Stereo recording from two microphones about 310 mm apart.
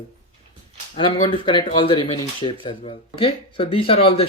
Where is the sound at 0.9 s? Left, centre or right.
Centre.